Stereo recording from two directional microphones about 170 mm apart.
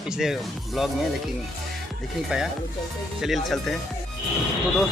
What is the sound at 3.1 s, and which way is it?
Speech, centre (ahead or behind).